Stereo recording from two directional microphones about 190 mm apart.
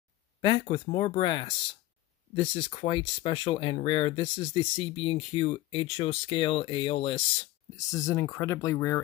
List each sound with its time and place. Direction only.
0.4 s speech: 25° left (ahead or behind)
7.7 s speech: 15° left (ahead or behind)